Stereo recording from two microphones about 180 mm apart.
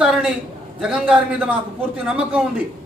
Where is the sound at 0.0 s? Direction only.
5° right (ahead or behind).